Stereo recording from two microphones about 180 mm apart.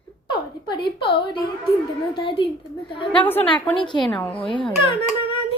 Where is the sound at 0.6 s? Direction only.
30° left (ahead or behind).